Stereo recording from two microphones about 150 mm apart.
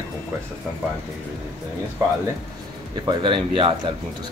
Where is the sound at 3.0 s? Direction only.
35° right (ahead or behind).